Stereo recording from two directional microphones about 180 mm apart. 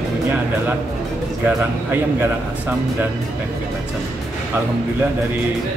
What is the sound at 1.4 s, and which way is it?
Speech, 10° right (ahead or behind).